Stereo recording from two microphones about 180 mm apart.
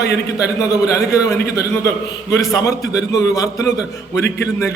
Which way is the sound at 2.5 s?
15° left (ahead or behind).